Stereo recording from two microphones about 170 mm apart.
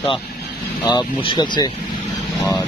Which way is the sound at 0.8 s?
25° left (ahead or behind).